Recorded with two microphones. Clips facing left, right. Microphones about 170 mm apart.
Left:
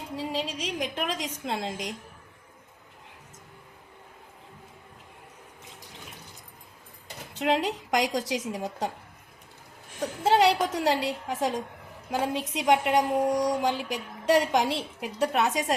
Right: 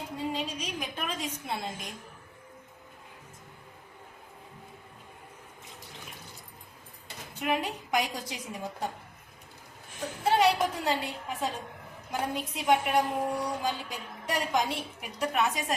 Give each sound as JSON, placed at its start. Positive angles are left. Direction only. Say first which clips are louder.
{"t": 0.2, "sound": "a woman's voice", "louder": "left 2 dB", "side_deg": 90}
{"t": 7.3, "sound": "a woman's voice", "louder": "left 5 dB", "side_deg": 85}
{"t": 10.4, "sound": "a woman's voice", "louder": "left 3 dB", "side_deg": 75}